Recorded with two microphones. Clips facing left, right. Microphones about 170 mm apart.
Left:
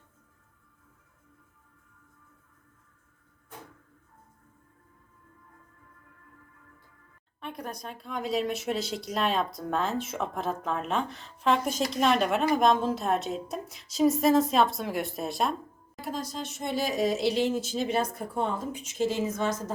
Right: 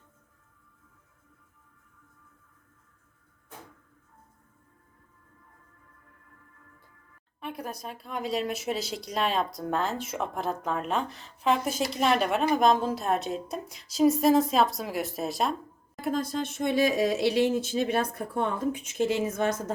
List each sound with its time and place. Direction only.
7.4 s speech: 5° right (ahead or behind)
16.0 s speech: 55° right (ahead or behind)